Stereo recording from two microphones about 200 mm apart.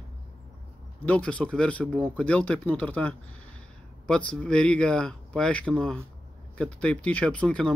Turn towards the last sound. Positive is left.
turn(degrees=5)  # may be behind; listen again after turning